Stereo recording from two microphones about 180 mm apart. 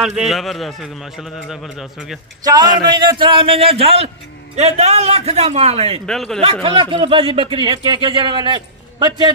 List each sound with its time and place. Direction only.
0.2 s a man's voice: centre (ahead or behind)
2.4 s a man's voice: 25° right (ahead or behind)
6.0 s a man's voice: 5° left (ahead or behind)
6.4 s speech: 30° right (ahead or behind)